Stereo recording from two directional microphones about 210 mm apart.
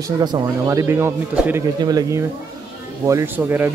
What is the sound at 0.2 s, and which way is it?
Speech, 20° right (ahead or behind).